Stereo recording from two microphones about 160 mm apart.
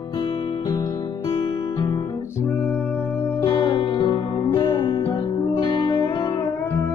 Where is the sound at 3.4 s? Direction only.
35° left (ahead or behind).